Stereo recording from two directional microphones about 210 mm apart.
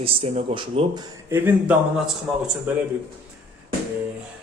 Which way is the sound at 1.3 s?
10° right (ahead or behind).